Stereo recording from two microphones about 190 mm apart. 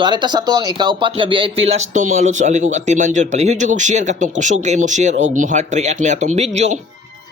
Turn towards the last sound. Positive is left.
turn(degrees=-35)  # may be behind; listen again after turning